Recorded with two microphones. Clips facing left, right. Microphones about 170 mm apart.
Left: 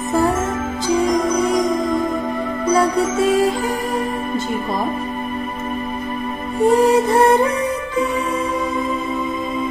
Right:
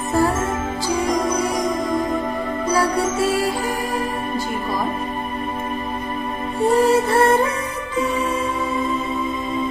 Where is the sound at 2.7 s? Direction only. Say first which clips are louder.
Left 3 dB; 20° left (ahead or behind).